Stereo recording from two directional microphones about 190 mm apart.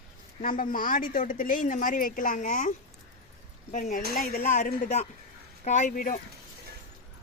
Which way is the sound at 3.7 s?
45° left (ahead or behind).